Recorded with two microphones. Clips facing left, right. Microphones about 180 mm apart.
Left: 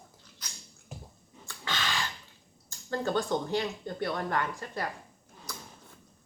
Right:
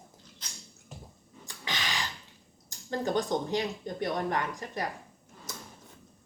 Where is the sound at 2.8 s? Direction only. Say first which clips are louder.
Even; 15° right (ahead or behind).